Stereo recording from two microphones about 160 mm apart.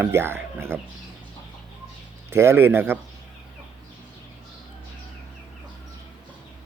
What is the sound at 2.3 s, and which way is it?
Speech, 15° right (ahead or behind).